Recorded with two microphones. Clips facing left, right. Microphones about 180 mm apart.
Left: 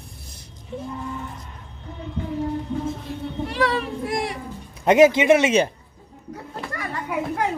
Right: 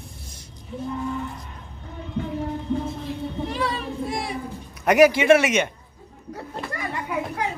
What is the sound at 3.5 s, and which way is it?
Speech, 80° left.